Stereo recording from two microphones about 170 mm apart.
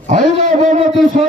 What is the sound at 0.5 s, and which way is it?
Speech, 50° right (ahead or behind).